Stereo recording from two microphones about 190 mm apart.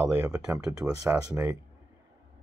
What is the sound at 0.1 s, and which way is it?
Speech, 15° right (ahead or behind).